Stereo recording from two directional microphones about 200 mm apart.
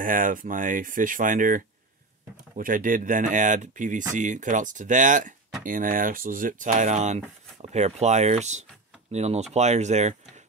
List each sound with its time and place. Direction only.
0.0 s speech: 45° right (ahead or behind)